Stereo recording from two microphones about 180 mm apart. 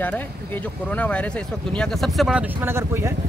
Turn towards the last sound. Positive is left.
turn(degrees=-15)  # may be behind; listen again after turning